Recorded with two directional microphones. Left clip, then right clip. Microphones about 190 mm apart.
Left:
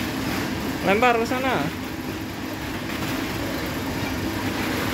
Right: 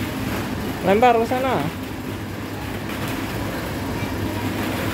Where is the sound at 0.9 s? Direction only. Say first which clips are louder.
Right 4 dB; 20° right (ahead or behind).